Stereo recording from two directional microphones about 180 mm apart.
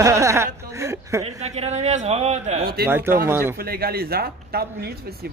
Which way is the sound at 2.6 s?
60° right (ahead or behind).